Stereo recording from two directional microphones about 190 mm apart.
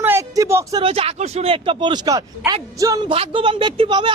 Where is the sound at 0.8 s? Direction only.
30° right (ahead or behind).